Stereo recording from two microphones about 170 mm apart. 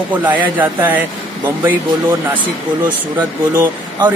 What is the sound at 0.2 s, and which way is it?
Speech, 10° right (ahead or behind).